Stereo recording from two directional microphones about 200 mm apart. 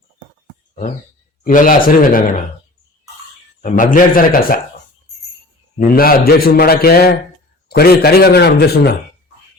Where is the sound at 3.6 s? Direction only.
40° left (ahead or behind).